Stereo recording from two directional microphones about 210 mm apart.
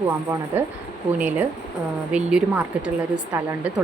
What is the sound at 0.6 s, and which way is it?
Speech, 10° right (ahead or behind).